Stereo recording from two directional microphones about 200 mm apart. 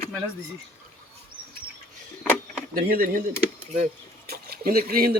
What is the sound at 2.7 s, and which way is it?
Speech, 45° right (ahead or behind).